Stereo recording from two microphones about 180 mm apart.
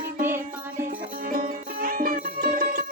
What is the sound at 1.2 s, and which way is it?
Music, 50° right (ahead or behind).